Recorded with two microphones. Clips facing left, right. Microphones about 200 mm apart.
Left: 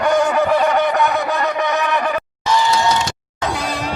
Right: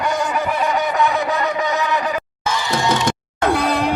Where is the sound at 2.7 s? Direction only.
55° right (ahead or behind).